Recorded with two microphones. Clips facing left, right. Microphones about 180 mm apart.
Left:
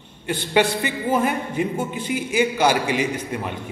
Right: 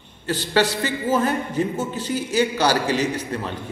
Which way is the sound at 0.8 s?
15° left (ahead or behind).